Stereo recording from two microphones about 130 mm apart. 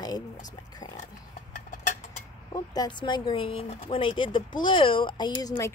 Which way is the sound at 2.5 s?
30° left (ahead or behind).